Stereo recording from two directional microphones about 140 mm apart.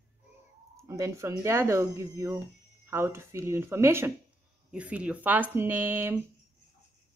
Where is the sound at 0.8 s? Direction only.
20° right (ahead or behind).